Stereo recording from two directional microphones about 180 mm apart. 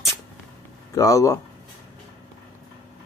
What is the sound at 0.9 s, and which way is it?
Speech, 20° left (ahead or behind).